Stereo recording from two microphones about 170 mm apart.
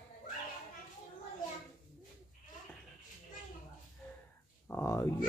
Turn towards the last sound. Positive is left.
turn(degrees=15)  # may be behind; listen again after turning